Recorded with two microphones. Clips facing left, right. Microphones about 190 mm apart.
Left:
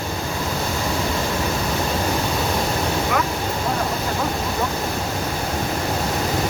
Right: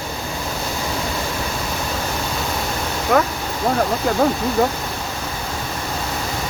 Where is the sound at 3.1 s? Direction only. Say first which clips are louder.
Right 9 dB; 45° right (ahead or behind).